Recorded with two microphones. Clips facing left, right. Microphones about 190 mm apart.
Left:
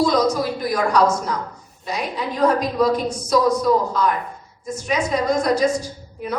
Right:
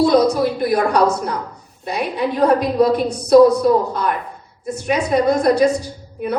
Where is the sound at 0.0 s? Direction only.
60° right (ahead or behind).